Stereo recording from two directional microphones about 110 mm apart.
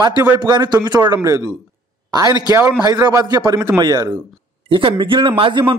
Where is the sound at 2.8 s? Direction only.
30° right (ahead or behind); by 5.7 s 50° right (ahead or behind).